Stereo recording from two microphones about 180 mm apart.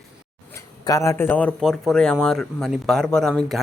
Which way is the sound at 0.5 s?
15° left (ahead or behind).